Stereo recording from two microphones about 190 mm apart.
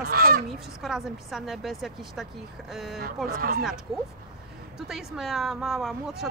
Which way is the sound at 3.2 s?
50° right (ahead or behind).